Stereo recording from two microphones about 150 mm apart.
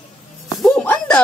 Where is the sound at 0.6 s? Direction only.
Centre (ahead or behind).